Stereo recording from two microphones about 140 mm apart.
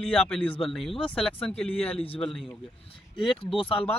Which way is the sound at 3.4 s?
40° left (ahead or behind).